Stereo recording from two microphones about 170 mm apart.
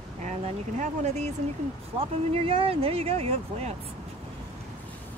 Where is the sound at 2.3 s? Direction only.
35° right (ahead or behind).